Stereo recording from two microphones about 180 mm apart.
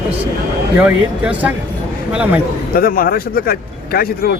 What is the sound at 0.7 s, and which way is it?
Speech, 10° right (ahead or behind).